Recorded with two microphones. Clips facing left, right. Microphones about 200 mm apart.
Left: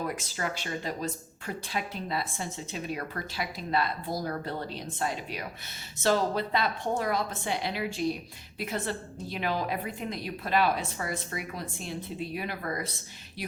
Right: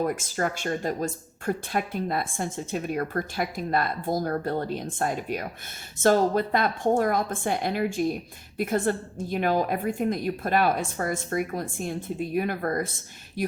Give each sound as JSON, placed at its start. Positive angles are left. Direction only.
{"t": 0.0, "sound": "a woman's voice", "side_deg": -50}